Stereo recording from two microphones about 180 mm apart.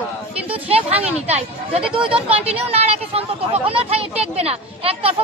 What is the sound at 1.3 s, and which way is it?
Speech, 30° right (ahead or behind).